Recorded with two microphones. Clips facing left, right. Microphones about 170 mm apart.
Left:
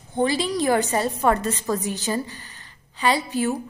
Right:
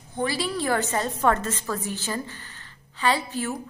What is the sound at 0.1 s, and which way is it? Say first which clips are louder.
A woman's voice: left 5 dB; 25° left (ahead or behind).